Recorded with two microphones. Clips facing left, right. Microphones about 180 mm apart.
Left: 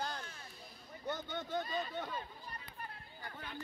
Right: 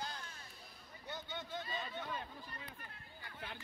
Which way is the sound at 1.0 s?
45° left (ahead or behind).